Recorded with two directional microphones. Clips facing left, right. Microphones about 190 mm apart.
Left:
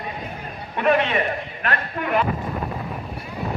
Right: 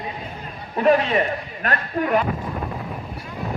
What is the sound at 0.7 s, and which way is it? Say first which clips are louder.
A man's voice: right 2 dB; 35° right (ahead or behind).